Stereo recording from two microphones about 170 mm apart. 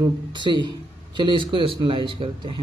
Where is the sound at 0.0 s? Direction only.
25° right (ahead or behind).